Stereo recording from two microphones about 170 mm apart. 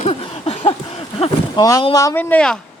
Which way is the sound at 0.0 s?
40° left (ahead or behind).